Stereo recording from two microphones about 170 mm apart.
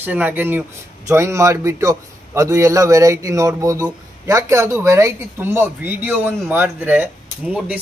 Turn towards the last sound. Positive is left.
turn(degrees=-5)  # may be behind; listen again after turning